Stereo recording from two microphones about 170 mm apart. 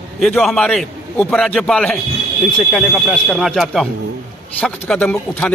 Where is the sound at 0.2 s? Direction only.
Centre (ahead or behind).